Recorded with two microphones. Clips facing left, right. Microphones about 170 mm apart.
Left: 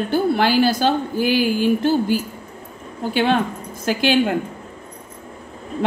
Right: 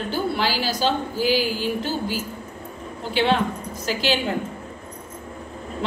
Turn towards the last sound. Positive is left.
turn(degrees=55)  # may be behind; listen again after turning